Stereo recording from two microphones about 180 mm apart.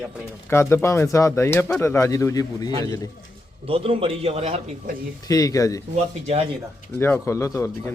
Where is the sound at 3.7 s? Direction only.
30° right (ahead or behind).